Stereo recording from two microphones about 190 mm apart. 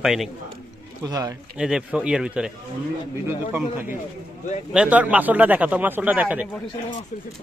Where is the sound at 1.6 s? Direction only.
5° right (ahead or behind).